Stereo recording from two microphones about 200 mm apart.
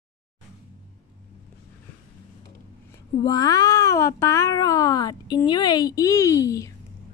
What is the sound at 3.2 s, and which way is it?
Speech, 20° left (ahead or behind).